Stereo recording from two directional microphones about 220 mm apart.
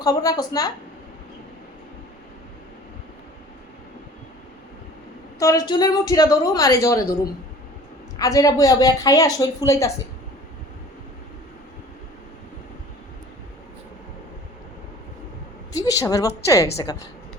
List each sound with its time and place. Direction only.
0.0 s a woman's voice: 15° left (ahead or behind)
5.4 s a woman's voice: 15° left (ahead or behind)
15.7 s a woman's voice: 15° left (ahead or behind)